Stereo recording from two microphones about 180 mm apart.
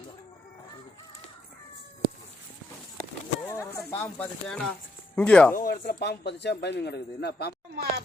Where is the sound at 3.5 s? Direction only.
15° left (ahead or behind).